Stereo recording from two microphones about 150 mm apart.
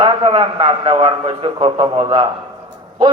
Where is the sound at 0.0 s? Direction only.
30° right (ahead or behind).